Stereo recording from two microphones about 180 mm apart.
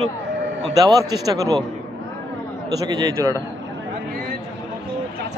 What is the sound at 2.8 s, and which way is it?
Speech, 20° right (ahead or behind).